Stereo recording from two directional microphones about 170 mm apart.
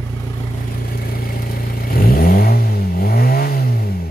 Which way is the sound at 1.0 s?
60° left (ahead or behind).